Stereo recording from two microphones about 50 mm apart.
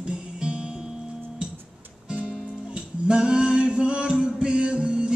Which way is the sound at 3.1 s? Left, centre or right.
Centre.